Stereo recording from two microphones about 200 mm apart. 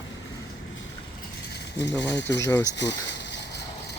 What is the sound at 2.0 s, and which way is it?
Speech, 65° left (ahead or behind).